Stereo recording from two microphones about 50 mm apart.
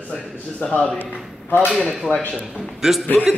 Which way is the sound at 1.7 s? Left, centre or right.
Centre.